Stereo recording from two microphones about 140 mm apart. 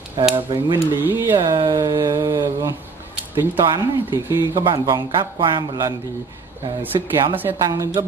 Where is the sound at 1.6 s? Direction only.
30° right (ahead or behind).